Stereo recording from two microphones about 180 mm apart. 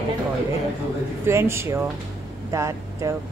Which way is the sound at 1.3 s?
15° right (ahead or behind).